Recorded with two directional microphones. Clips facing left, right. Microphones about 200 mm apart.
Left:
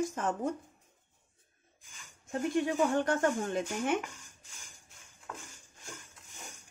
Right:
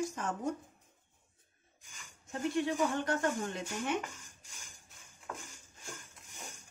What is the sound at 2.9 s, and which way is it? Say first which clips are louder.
Speech: left 4 dB; 50° left (ahead or behind).